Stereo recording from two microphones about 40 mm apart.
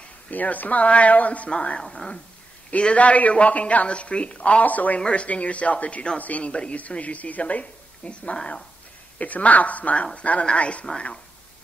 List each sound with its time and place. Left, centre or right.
0.3 s a woman's voice: left
1.8 s speech: centre
2.8 s a woman's voice: left
6.5 s a woman's voice: left
9.2 s a woman's voice: left